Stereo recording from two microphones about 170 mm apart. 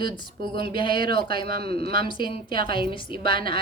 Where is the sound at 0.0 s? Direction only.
30° left (ahead or behind).